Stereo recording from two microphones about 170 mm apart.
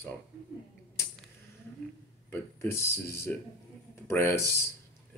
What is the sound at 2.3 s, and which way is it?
Speech, 15° left (ahead or behind).